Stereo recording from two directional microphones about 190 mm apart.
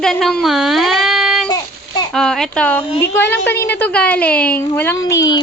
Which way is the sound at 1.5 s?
20° left (ahead or behind).